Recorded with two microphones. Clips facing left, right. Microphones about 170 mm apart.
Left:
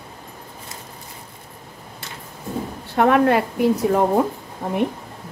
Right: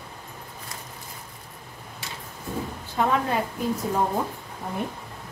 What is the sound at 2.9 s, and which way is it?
A woman's voice, 70° left (ahead or behind).